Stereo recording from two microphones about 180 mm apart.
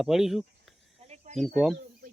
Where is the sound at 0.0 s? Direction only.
Centre (ahead or behind).